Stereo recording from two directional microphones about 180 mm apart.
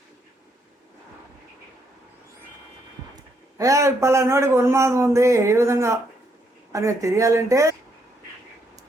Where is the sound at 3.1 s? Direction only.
20° right (ahead or behind).